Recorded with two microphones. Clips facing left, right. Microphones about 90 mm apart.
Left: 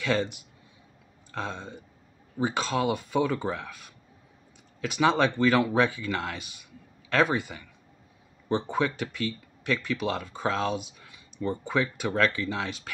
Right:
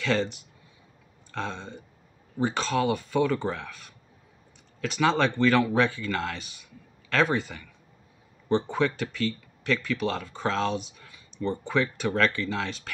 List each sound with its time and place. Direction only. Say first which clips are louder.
0.0 s speech: right 1 dB; 15° left (ahead or behind)
4.8 s speech: even; 15° left (ahead or behind)